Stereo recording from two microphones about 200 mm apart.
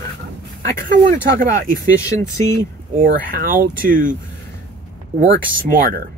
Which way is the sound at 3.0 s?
45° right (ahead or behind).